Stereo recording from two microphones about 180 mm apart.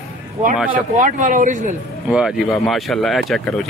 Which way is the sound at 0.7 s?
45° right (ahead or behind).